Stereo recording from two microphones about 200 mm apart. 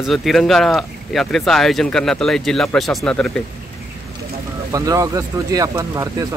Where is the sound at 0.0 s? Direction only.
Centre (ahead or behind).